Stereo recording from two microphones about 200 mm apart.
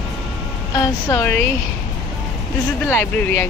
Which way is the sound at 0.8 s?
15° left (ahead or behind).